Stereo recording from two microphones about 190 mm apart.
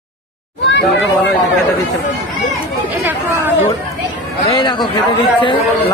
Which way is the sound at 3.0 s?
10° right (ahead or behind).